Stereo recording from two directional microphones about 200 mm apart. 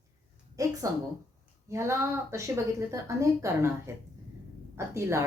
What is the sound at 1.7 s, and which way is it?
A woman's voice, 15° right (ahead or behind).